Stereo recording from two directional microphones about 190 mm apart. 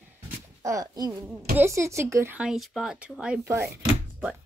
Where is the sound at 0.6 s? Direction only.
15° right (ahead or behind).